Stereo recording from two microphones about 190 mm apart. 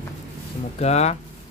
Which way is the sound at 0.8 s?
35° left (ahead or behind).